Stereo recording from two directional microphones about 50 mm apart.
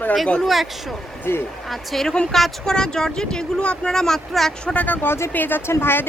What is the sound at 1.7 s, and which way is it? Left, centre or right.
Speech, centre.